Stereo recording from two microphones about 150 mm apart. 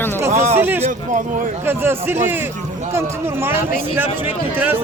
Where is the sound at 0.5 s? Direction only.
15° right (ahead or behind).